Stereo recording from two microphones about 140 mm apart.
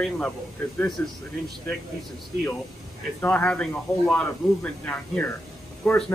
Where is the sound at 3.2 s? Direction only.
10° left (ahead or behind).